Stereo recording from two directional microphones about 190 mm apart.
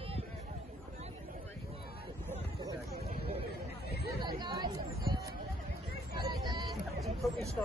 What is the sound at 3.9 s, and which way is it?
Chatter, 55° left (ahead or behind).